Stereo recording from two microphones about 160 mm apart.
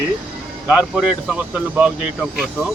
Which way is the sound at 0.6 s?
5° right (ahead or behind).